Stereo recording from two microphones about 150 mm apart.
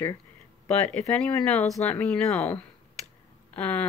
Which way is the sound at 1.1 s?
10° left (ahead or behind).